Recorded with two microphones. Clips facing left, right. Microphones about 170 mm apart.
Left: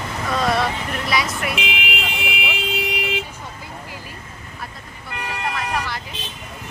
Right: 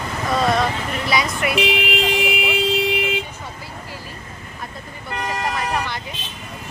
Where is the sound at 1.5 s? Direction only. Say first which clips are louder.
Right 7 dB; 35° right (ahead or behind).